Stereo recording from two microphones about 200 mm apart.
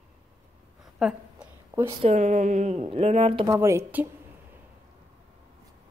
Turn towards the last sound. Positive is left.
turn(degrees=-10)  # may be behind; listen again after turning